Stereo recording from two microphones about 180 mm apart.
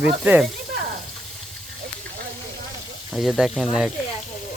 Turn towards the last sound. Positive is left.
turn(degrees=0)  # may be behind; listen again after turning